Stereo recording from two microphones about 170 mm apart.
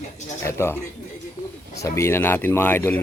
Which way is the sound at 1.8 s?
15° left (ahead or behind).